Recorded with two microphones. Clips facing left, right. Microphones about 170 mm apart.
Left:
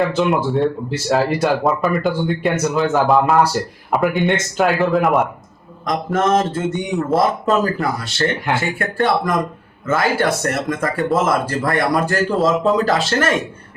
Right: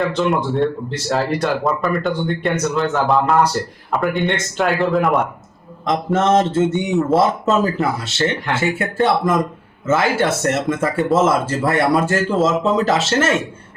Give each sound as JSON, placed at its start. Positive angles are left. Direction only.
{"t": 0.0, "sound": "speech", "side_deg": 5}
{"t": 5.8, "sound": "speech", "side_deg": -25}
{"t": 12.3, "sound": "speech", "side_deg": 0}
{"t": 12.7, "sound": "speech", "side_deg": -25}